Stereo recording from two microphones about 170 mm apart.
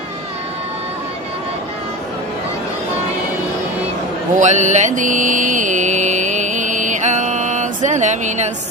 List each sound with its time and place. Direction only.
4.4 s mantra: 45° right (ahead or behind)